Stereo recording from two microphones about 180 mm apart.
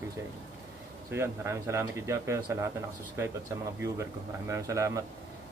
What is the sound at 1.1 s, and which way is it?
Speech, 15° right (ahead or behind).